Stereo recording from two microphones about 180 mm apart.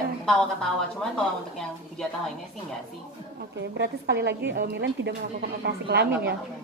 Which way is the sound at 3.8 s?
70° right (ahead or behind).